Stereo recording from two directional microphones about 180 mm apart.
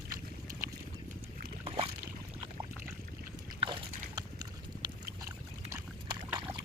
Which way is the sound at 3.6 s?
25° right (ahead or behind).